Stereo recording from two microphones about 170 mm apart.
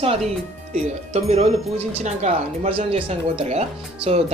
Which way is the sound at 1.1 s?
40° right (ahead or behind).